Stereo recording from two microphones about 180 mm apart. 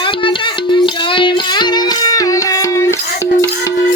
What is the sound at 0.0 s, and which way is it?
Music, 25° left (ahead or behind).